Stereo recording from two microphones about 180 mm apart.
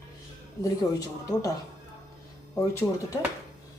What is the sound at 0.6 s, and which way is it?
Speech, 20° left (ahead or behind).